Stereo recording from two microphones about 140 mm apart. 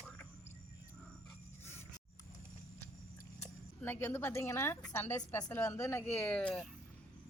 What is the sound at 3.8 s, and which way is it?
A woman's voice, 15° left (ahead or behind).